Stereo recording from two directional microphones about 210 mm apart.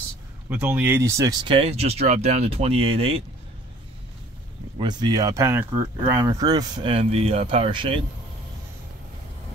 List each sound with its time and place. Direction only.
0.5 s speech: 10° right (ahead or behind); by 3.2 s 30° right (ahead or behind)
4.7 s speech: 20° right (ahead or behind)